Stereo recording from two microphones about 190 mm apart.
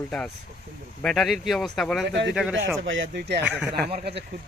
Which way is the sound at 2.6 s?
75° right (ahead or behind).